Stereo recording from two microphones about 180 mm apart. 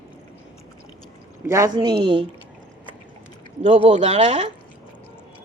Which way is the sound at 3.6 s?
40° right (ahead or behind).